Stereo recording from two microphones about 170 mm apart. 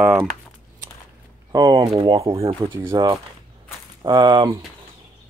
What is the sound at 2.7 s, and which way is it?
Speech, 15° right (ahead or behind).